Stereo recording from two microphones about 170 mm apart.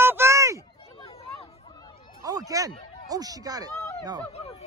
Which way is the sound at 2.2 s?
20° right (ahead or behind).